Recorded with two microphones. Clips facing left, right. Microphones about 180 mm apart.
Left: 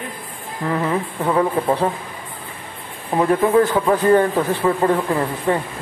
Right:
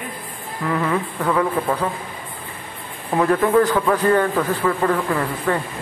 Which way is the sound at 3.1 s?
20° left (ahead or behind).